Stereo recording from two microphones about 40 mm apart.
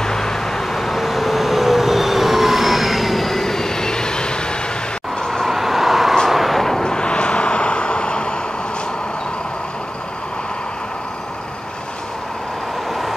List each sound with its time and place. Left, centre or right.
0.0 s vehicle: centre
5.2 s vehicle: centre
5.5 s vehicle: centre
6.8 s vehicle: left